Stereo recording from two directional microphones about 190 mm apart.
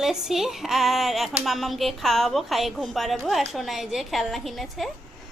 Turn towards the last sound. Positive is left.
turn(degrees=0)  # may be behind; listen again after turning